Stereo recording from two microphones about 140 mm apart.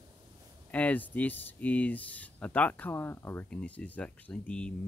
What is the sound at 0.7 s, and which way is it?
Speech, 10° left (ahead or behind).